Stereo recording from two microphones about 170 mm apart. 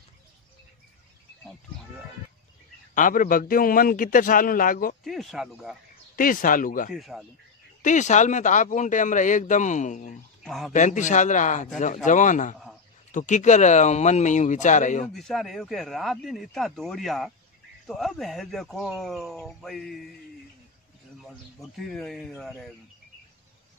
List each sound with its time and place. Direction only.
2.9 s a man's voice: 50° left (ahead or behind)
5.0 s speech: centre (ahead or behind)
6.1 s a man's voice: 55° left (ahead or behind)
6.9 s speech: centre (ahead or behind)
7.8 s a man's voice: 45° left (ahead or behind)
10.4 s speech: centre (ahead or behind)
10.7 s a man's voice: 45° left (ahead or behind)
15.1 s speech: centre (ahead or behind)
21.2 s speech: centre (ahead or behind)